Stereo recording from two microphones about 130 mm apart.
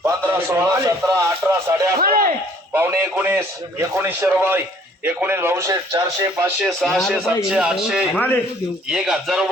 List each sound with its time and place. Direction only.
0.0 s a sound: 20° right (ahead or behind)
2.0 s a sound: 90° right
2.7 s a man's voice: 15° right (ahead or behind)
6.6 s speech: centre (ahead or behind)
8.1 s a man's voice: 15° left (ahead or behind)
8.9 s speech: 5° right (ahead or behind)